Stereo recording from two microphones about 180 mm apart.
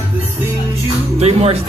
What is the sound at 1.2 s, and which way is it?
Speech, 35° right (ahead or behind).